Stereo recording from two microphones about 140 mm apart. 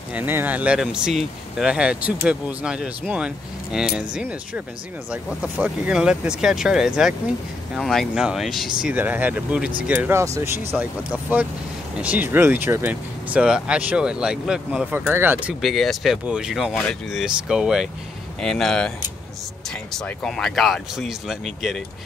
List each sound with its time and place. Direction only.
0.1 s speech: 15° right (ahead or behind)
8.9 s speech: 10° right (ahead or behind)
15.6 s speech: centre (ahead or behind)
19.9 s speech: 5° left (ahead or behind)